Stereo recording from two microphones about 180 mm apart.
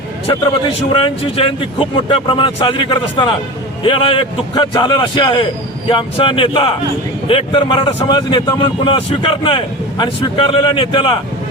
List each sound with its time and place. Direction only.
0.3 s a man's voice: 25° left (ahead or behind)